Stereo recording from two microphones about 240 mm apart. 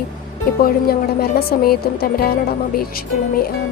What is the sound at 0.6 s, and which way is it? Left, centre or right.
Speech, left.